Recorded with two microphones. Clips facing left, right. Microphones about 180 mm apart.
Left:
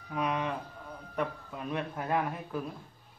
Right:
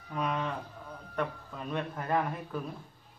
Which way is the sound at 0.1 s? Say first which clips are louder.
Left 1 dB; 10° left (ahead or behind).